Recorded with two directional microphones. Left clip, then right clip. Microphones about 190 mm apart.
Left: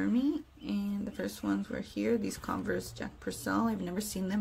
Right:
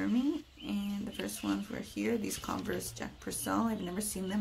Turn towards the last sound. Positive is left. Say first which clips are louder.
# left 1 dB
turn(degrees=10)  # may be behind; listen again after turning